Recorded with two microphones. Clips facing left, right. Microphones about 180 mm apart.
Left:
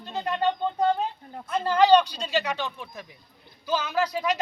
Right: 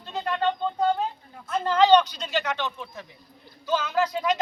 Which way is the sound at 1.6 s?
10° left (ahead or behind).